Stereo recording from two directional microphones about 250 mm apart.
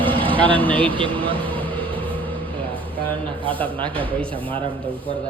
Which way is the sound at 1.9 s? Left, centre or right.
Right.